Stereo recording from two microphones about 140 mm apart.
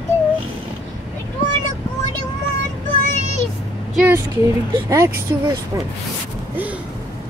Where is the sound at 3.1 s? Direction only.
55° left (ahead or behind).